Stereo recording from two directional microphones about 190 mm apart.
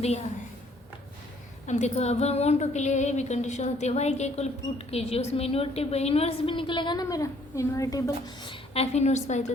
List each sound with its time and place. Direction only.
1.6 s a woman's voice: 35° left (ahead or behind); by 8.5 s 20° left (ahead or behind)
8.7 s a woman's voice: 35° left (ahead or behind)